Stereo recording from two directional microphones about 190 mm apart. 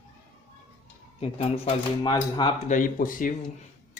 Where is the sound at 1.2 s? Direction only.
35° left (ahead or behind).